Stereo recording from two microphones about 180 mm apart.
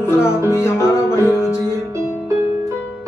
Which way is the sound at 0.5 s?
15° left (ahead or behind).